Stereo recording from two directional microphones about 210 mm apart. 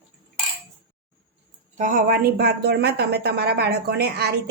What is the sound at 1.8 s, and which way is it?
Speech, 40° right (ahead or behind).